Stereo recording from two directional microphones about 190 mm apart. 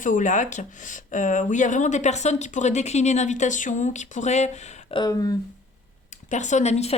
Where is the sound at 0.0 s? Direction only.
40° left (ahead or behind); by 5.4 s 20° left (ahead or behind).